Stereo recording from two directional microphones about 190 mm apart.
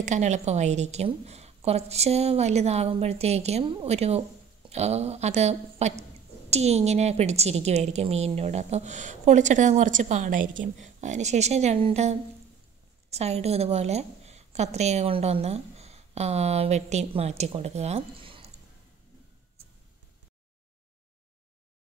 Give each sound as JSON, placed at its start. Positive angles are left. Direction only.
{"t": 0.0, "sound": "a woman's voice", "side_deg": -40}